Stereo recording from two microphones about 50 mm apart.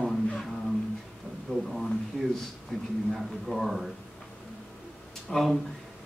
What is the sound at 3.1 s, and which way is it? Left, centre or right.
Speech, centre.